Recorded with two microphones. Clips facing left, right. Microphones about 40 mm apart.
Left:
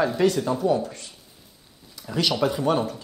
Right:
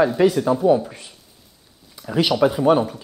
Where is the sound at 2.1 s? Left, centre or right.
Centre.